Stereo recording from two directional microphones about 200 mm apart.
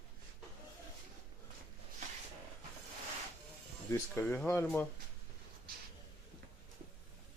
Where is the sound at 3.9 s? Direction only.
10° left (ahead or behind).